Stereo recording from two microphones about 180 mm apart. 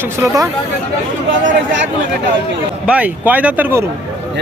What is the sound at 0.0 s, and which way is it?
Speech, 10° right (ahead or behind).